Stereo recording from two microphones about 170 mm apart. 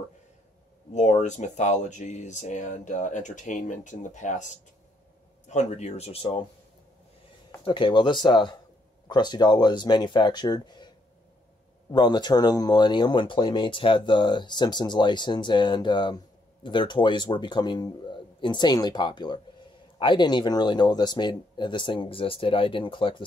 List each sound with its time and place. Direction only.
0.9 s speech: 45° left (ahead or behind)
7.6 s speech: 30° left (ahead or behind)
11.9 s speech: 25° left (ahead or behind)